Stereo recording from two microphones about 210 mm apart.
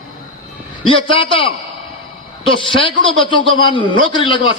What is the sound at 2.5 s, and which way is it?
A man's voice, 25° left (ahead or behind).